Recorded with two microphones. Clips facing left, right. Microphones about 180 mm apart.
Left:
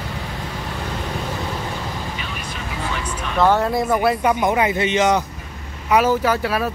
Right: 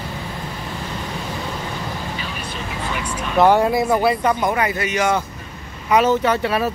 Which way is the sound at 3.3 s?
15° right (ahead or behind).